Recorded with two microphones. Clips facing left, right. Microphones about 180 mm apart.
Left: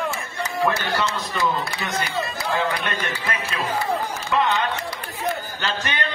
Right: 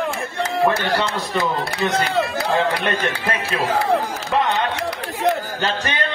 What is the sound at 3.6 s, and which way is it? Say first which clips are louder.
Speech: right 6 dB; 75° right (ahead or behind).